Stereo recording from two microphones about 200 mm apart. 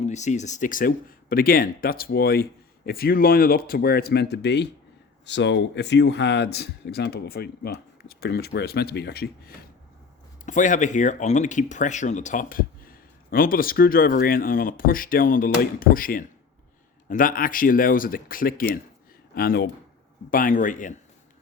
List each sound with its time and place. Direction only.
0.0 s speech: 35° left (ahead or behind); by 9.6 s 50° left (ahead or behind)
10.4 s speech: 40° left (ahead or behind)
20.3 s speech: 40° left (ahead or behind)